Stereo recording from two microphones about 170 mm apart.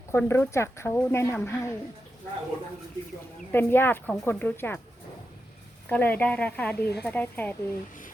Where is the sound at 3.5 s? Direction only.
10° left (ahead or behind).